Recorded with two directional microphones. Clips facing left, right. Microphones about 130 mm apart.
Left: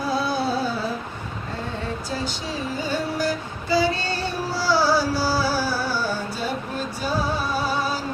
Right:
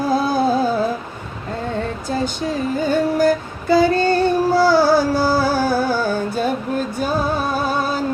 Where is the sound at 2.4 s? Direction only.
50° right (ahead or behind).